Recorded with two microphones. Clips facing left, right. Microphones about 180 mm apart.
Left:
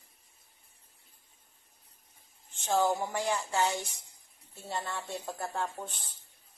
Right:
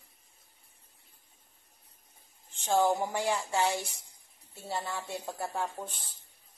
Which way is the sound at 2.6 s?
10° right (ahead or behind).